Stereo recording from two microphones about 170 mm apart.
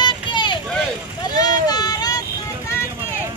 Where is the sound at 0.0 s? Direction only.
30° left (ahead or behind).